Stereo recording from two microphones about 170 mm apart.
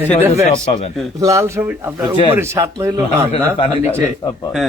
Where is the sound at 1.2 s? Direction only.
20° right (ahead or behind).